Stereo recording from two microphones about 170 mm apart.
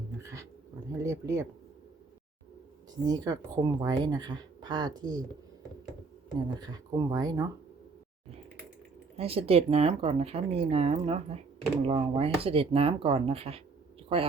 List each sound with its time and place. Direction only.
0.2 s a sound: 15° right (ahead or behind)
0.9 s speech: 15° right (ahead or behind)
3.0 s speech: 20° right (ahead or behind)
6.6 s speech: 20° right (ahead or behind)
9.1 s speech: 35° right (ahead or behind)